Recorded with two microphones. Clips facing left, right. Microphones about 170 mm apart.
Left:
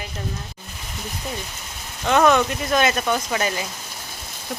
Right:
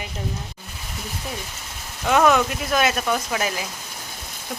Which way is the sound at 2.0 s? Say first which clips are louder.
Left 1 dB; 5° right (ahead or behind).